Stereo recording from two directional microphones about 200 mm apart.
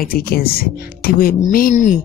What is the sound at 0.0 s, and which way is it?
Speech, 50° left (ahead or behind).